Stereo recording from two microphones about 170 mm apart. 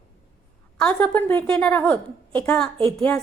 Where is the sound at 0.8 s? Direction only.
10° left (ahead or behind).